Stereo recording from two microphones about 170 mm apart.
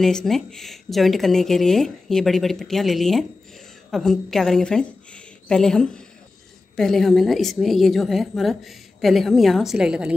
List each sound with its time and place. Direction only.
0.0 s a woman's voice: 5° left (ahead or behind)